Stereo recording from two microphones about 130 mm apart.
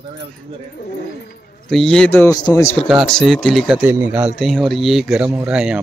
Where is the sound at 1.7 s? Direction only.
5° left (ahead or behind).